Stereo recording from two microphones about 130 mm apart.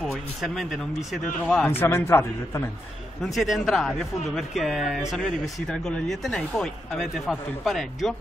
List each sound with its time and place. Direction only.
0.0 s speech: centre (ahead or behind)
1.6 s a man's voice: 15° left (ahead or behind)
3.3 s speech: centre (ahead or behind)